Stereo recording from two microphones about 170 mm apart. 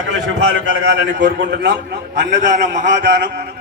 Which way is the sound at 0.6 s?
90° right.